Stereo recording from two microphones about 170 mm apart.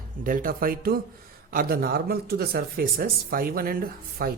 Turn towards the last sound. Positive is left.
turn(degrees=-60)  # may be behind; listen again after turning